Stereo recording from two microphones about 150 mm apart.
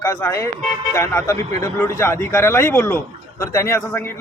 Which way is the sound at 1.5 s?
50° right (ahead or behind).